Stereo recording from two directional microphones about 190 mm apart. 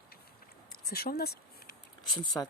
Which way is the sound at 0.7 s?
55° left (ahead or behind).